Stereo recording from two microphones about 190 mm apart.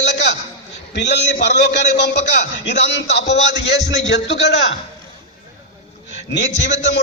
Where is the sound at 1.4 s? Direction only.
65° left (ahead or behind).